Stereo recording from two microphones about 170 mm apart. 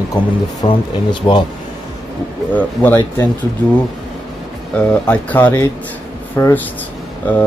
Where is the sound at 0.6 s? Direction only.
35° left (ahead or behind).